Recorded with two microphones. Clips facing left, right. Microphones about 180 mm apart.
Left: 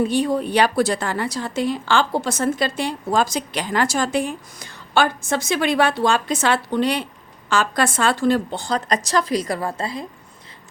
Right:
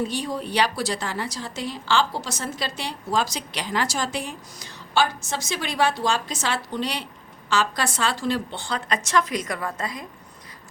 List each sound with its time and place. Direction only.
0.1 s a woman's voice: 55° left (ahead or behind); by 10.1 s 30° left (ahead or behind)